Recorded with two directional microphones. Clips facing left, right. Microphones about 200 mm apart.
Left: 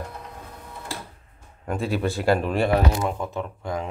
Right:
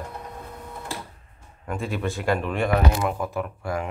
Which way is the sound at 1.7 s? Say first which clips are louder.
Left 3 dB; 35° left (ahead or behind).